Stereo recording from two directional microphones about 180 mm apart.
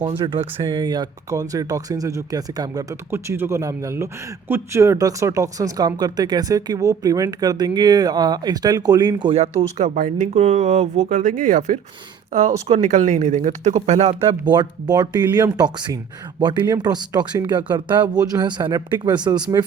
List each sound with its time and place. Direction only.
0.2 s speech: 30° right (ahead or behind)
14.5 s speech: 25° right (ahead or behind)